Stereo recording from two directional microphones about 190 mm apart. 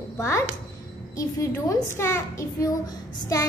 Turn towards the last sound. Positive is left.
turn(degrees=20)  # may be behind; listen again after turning